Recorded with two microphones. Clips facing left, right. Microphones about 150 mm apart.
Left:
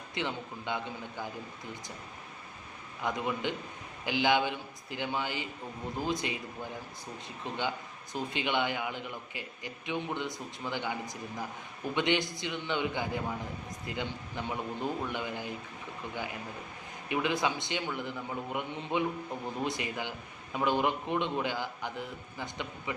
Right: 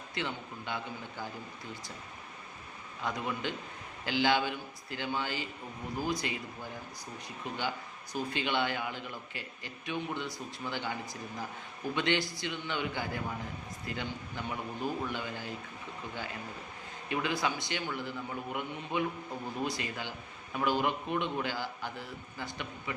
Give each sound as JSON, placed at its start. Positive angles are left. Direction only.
{"t": 0.1, "sound": "a man's voice", "side_deg": 20}
{"t": 3.0, "sound": "a man's voice", "side_deg": 20}
{"t": 7.4, "sound": "a man's voice", "side_deg": 20}
{"t": 17.1, "sound": "a man's voice", "side_deg": 20}